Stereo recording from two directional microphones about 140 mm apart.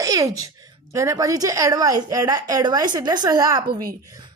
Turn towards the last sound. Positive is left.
turn(degrees=-25)  # may be behind; listen again after turning